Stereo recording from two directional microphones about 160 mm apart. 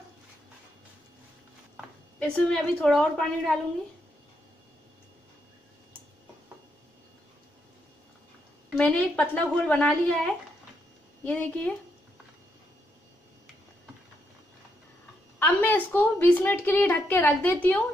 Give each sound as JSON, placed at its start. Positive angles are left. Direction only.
{"t": 2.1, "sound": "a woman's voice", "side_deg": 5}
{"t": 8.7, "sound": "a woman's voice", "side_deg": 10}
{"t": 15.3, "sound": "a woman's voice", "side_deg": 10}